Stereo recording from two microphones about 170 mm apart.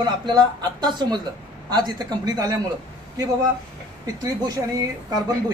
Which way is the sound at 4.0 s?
20° right (ahead or behind).